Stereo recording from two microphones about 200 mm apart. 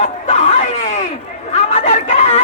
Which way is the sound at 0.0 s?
35° left (ahead or behind).